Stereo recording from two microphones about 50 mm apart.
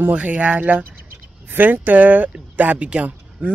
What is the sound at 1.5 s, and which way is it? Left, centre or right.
Speech, right.